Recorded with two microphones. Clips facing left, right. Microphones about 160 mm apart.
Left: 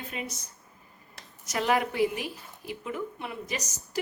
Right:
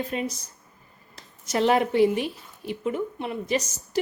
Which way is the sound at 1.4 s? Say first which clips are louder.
Right 5 dB; 30° right (ahead or behind).